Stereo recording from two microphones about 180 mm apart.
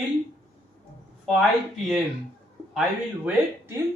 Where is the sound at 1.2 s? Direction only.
Centre (ahead or behind).